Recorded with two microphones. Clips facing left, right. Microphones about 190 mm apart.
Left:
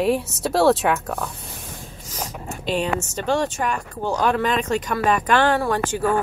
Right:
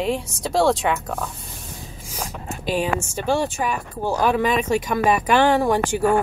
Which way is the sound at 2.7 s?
5° right (ahead or behind).